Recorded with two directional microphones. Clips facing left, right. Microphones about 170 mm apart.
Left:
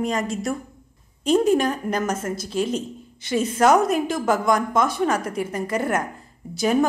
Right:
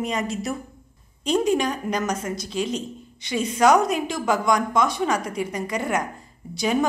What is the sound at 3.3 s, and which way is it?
Speech, 50° left (ahead or behind).